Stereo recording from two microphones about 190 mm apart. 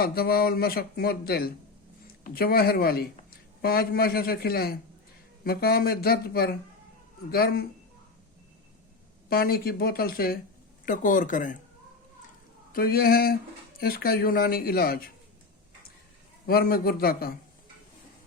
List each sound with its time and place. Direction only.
0.0 s speech: 50° left (ahead or behind)
9.3 s speech: 50° left (ahead or behind)
12.7 s speech: 50° left (ahead or behind)
16.5 s speech: 50° left (ahead or behind)